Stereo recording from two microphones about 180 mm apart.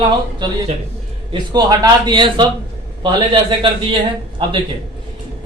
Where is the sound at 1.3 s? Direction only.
25° right (ahead or behind).